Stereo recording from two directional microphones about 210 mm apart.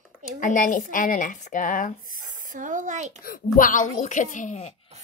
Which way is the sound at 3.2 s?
40° left (ahead or behind).